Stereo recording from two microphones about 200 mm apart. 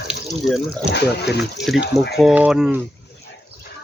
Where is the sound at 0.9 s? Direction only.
55° left (ahead or behind).